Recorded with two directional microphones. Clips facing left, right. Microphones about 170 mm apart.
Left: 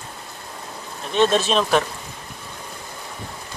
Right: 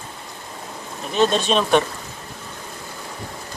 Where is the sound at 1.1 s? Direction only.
Centre (ahead or behind).